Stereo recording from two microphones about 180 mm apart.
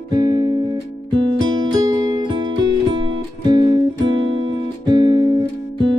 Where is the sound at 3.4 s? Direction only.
25° right (ahead or behind).